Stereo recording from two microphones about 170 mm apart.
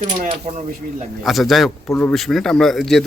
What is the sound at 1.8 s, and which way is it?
Speech, 10° left (ahead or behind).